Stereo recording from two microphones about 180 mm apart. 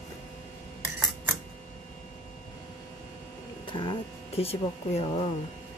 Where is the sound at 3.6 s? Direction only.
25° left (ahead or behind).